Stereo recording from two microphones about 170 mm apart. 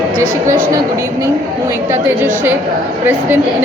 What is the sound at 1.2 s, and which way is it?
Speech, 15° right (ahead or behind).